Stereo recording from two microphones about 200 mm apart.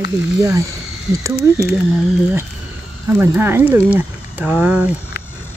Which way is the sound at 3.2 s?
10° right (ahead or behind).